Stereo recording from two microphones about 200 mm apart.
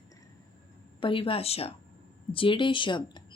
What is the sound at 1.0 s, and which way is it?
Speech, 25° left (ahead or behind).